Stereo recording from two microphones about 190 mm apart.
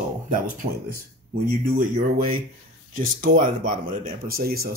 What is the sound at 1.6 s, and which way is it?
Speech, 45° right (ahead or behind).